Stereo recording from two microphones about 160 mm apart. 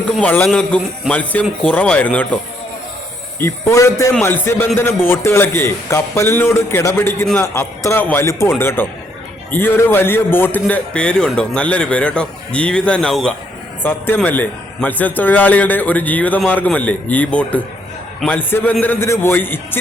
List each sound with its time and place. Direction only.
0.2 s a man's voice: 10° left (ahead or behind)
3.4 s a man's voice: 20° left (ahead or behind)